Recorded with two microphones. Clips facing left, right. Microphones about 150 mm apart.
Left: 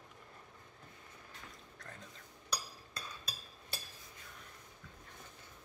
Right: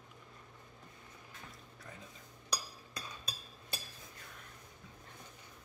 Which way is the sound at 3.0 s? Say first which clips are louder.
Right 1 dB; 20° right (ahead or behind).